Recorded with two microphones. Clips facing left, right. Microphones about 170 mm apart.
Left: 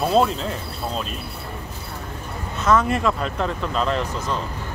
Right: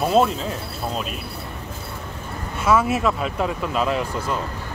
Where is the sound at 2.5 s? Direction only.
10° right (ahead or behind).